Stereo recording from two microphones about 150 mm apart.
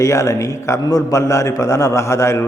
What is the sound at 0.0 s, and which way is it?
A man's voice, 20° left (ahead or behind).